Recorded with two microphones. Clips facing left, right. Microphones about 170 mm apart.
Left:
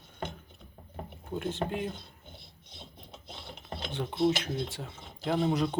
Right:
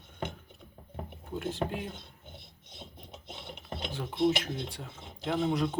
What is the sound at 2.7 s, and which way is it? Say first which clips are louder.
Filing: right 2 dB; 20° right (ahead or behind).